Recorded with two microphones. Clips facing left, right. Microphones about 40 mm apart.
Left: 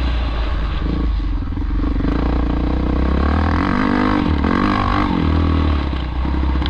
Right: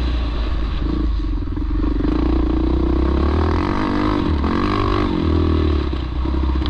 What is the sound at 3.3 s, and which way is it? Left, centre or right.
Didgeridoo, left.